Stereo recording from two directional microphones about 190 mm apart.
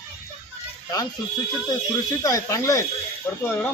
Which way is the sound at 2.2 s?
20° left (ahead or behind).